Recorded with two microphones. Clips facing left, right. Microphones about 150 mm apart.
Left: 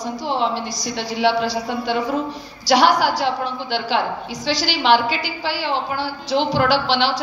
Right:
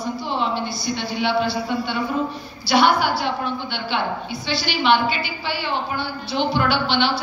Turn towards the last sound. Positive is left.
turn(degrees=90)